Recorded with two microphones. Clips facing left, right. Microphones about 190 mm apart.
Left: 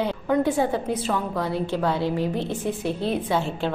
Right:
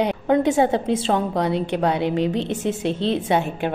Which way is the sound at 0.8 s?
25° right (ahead or behind).